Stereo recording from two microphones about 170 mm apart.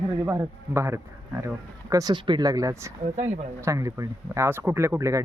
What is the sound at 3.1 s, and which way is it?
Speech, 45° right (ahead or behind).